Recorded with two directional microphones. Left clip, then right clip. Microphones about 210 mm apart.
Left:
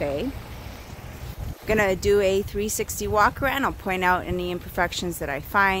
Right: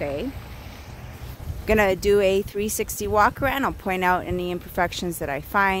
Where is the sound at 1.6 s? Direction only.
45° right (ahead or behind).